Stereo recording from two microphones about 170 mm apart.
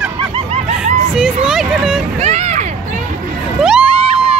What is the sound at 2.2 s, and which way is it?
Vehicle, 40° right (ahead or behind).